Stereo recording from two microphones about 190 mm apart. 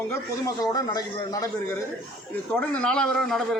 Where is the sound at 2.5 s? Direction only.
5° left (ahead or behind).